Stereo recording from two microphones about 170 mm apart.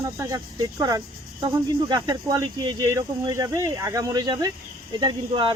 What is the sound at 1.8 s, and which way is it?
Speech, 20° right (ahead or behind).